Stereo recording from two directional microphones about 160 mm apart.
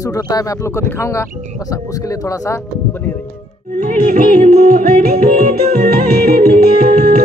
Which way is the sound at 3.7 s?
60° right (ahead or behind).